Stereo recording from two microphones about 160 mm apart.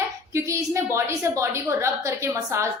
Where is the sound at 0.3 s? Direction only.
15° right (ahead or behind).